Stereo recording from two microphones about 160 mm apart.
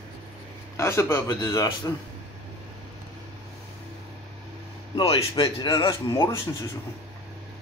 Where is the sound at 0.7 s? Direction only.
15° left (ahead or behind).